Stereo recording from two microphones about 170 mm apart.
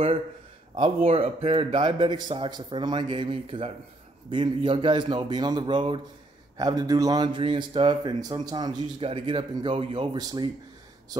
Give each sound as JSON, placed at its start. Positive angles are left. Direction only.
{"t": 0.7, "sound": "a man's voice", "side_deg": -35}